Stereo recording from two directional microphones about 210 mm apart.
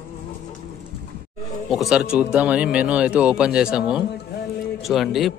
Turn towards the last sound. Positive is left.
turn(degrees=0)  # may be behind; listen again after turning